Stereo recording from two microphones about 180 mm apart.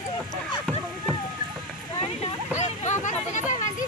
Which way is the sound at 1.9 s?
35° left (ahead or behind).